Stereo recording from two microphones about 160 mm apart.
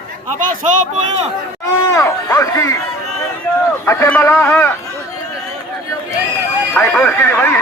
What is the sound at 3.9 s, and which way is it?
Speech, 15° left (ahead or behind).